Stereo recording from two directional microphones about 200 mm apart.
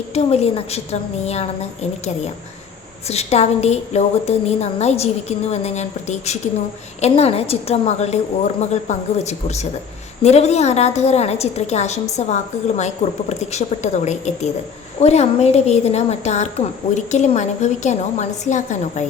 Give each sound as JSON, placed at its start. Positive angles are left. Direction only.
{"t": 0.1, "sound": "a woman's voice", "side_deg": 30}